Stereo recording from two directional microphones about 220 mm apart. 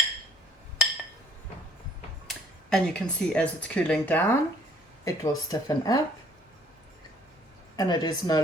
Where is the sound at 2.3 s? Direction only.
5° left (ahead or behind).